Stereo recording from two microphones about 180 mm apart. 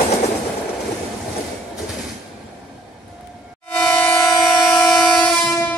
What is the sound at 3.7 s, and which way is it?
Train, 10° left (ahead or behind).